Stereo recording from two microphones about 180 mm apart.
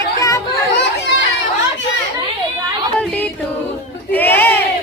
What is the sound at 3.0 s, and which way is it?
Music, 10° left (ahead or behind).